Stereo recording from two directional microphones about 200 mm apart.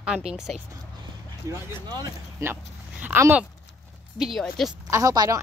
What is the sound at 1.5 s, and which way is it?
Speech, 20° right (ahead or behind).